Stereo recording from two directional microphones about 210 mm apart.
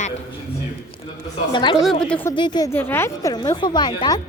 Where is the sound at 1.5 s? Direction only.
20° left (ahead or behind).